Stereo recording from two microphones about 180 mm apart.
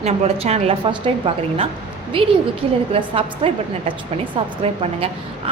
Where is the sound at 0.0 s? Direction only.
35° right (ahead or behind).